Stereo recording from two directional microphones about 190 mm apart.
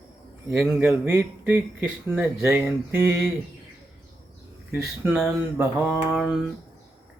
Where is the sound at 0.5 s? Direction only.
10° right (ahead or behind).